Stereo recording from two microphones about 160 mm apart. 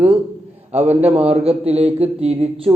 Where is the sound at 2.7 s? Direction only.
20° right (ahead or behind).